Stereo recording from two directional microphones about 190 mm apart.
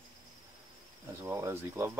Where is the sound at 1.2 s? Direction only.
15° right (ahead or behind).